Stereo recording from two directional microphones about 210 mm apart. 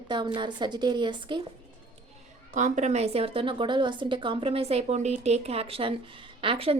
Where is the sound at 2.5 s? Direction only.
35° right (ahead or behind).